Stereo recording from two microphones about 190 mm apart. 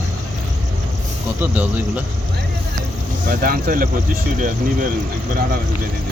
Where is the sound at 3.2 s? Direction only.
50° right (ahead or behind).